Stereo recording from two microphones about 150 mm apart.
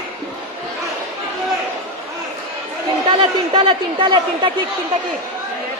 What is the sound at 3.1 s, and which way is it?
Speech, 35° right (ahead or behind).